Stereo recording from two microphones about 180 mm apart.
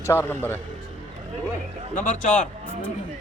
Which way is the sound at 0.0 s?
15° left (ahead or behind).